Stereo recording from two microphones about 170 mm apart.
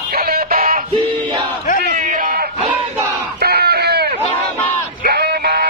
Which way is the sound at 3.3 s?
70° right (ahead or behind).